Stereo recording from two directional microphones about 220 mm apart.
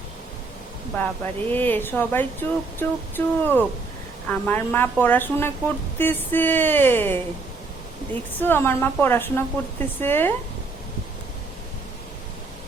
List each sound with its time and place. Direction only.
0.9 s speech: 10° left (ahead or behind)